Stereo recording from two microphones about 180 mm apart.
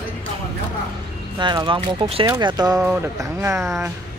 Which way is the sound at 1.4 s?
25° right (ahead or behind).